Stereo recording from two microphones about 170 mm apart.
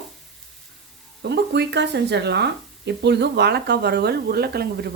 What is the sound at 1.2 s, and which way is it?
Speech, 80° right.